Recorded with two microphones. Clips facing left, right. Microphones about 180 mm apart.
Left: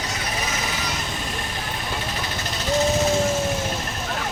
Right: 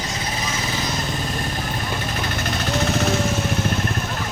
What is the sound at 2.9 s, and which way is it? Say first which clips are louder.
Vehicle: even; 65° right (ahead or behind).